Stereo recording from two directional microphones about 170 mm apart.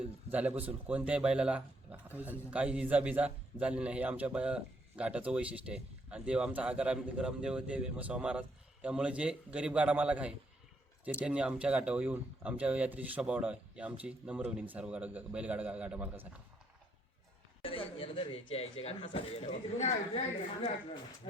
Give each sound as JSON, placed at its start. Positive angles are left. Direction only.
{"t": 0.0, "sound": "speech", "side_deg": -10}
{"t": 17.6, "sound": "speech", "side_deg": 30}